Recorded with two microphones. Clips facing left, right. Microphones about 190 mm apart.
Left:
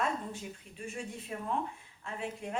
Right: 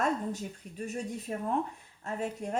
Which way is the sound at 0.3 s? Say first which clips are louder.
Right 5 dB; 40° right (ahead or behind).